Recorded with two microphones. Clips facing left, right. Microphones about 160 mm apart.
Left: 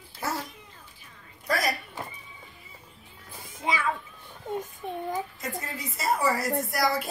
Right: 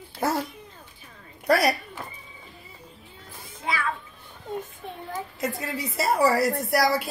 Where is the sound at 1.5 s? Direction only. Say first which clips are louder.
Right 7 dB; 70° right (ahead or behind).